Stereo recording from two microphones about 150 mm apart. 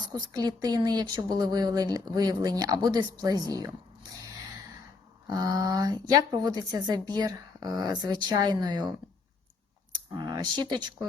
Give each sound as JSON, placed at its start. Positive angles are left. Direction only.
{"t": 0.1, "sound": "speech", "side_deg": -25}
{"t": 5.3, "sound": "speech", "side_deg": -25}
{"t": 9.9, "sound": "computer keyboard", "side_deg": -25}